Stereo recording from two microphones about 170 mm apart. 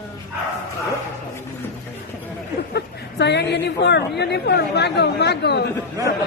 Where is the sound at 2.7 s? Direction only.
80° left.